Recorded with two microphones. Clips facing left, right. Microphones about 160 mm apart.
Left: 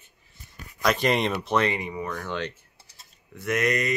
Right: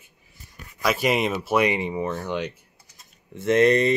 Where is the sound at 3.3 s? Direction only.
25° right (ahead or behind).